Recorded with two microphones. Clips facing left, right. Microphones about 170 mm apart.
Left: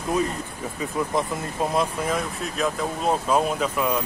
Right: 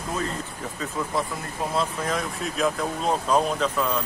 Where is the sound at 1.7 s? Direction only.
15° left (ahead or behind).